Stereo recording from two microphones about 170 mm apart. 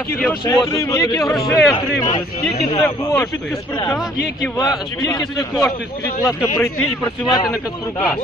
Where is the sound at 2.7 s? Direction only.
20° left (ahead or behind).